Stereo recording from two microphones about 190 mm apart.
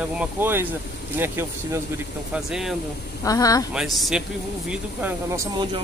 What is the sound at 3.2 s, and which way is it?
Speech, 20° left (ahead or behind).